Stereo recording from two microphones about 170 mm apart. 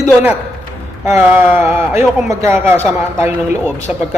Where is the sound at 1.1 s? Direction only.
15° right (ahead or behind).